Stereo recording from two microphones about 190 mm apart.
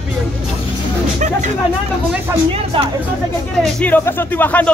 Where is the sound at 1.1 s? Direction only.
40° right (ahead or behind).